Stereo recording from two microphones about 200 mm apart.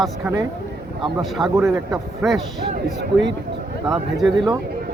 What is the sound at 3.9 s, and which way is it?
Speech, centre (ahead or behind).